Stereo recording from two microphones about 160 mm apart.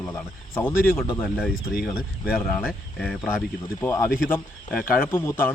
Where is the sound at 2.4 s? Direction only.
10° left (ahead or behind).